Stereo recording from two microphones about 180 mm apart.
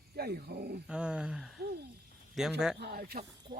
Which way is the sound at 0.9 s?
5° right (ahead or behind).